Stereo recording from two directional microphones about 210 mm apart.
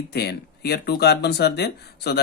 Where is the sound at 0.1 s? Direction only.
50° left (ahead or behind).